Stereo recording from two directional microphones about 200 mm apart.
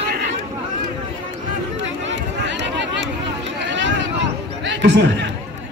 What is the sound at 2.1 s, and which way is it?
Run, 65° right (ahead or behind).